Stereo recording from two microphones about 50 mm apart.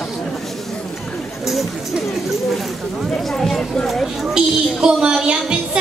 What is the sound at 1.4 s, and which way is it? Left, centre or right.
Chatter, centre.